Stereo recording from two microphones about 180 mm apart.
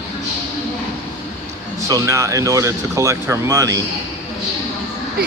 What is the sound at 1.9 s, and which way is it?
Speech, 15° right (ahead or behind).